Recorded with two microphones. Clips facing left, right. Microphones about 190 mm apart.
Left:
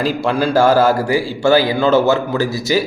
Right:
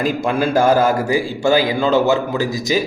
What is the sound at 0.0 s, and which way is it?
Speech, 35° left (ahead or behind).